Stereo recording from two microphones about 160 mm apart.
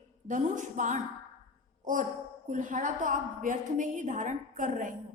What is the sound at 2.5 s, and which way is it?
A woman's voice, 55° right (ahead or behind).